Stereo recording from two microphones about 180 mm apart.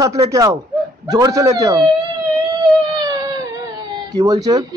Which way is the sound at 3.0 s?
20° right (ahead or behind).